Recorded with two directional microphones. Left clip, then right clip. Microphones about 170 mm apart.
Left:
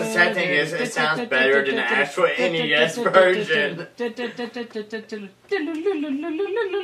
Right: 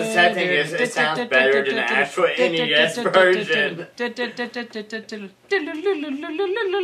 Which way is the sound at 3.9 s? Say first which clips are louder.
Right 2 dB; 30° right (ahead or behind).